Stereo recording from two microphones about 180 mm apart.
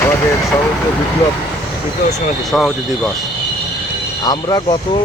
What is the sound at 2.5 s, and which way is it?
Speech, 5° left (ahead or behind).